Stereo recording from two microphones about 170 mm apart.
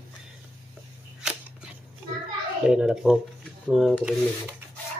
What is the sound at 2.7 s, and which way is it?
A child's voice, 5° right (ahead or behind).